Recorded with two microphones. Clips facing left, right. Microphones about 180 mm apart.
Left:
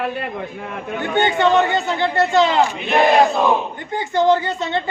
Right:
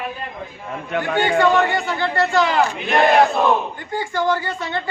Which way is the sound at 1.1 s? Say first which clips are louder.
Left 1 dB; 20° left (ahead or behind).